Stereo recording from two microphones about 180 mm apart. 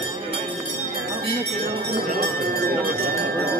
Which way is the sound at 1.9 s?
60° right (ahead or behind).